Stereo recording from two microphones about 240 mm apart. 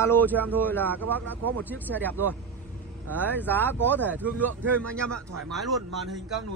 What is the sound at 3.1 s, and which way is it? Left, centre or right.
A man's voice, centre.